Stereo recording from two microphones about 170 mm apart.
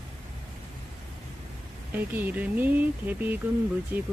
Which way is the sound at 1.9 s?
10° right (ahead or behind).